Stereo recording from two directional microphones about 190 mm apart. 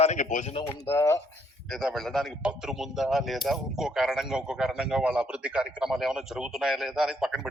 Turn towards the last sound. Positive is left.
turn(degrees=0)  # may be behind; listen again after turning